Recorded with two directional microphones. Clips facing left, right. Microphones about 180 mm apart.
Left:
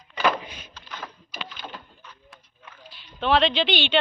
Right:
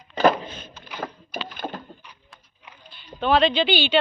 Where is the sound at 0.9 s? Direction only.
50° right (ahead or behind).